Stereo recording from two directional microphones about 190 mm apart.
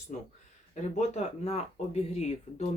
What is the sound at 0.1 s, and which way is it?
Speech, 45° left (ahead or behind).